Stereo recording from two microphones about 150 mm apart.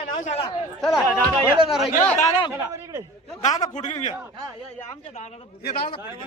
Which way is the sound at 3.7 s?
50° left (ahead or behind).